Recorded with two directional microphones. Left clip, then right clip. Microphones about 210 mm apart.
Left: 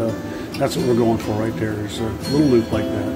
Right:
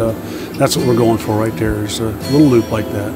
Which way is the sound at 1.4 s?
50° right (ahead or behind).